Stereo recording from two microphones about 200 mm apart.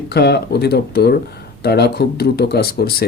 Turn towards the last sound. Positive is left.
turn(degrees=50)  # may be behind; listen again after turning